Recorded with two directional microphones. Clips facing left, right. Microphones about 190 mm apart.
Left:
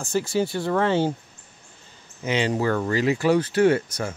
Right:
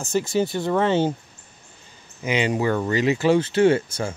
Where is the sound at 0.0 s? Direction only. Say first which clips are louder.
Right 1 dB; 20° right (ahead or behind).